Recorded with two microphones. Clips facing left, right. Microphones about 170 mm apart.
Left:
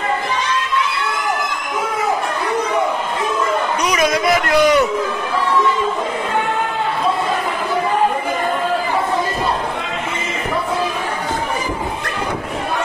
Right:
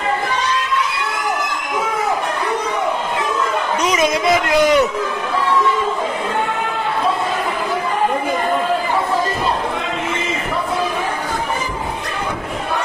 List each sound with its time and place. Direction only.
3.8 s a man's voice: 25° right (ahead or behind)